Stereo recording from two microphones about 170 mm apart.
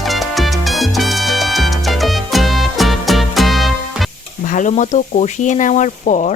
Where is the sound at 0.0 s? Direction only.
Centre (ahead or behind).